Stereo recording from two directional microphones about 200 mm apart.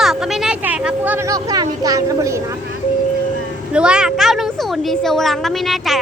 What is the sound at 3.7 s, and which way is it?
A woman's voice, 5° right (ahead or behind).